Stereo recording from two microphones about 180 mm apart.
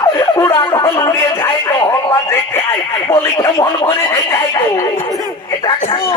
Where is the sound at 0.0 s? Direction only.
15° left (ahead or behind).